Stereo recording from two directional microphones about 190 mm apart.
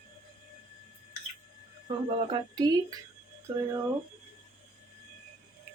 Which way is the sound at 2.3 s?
20° right (ahead or behind).